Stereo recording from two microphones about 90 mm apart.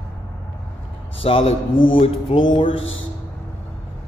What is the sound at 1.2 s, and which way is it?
Speech, 90° left.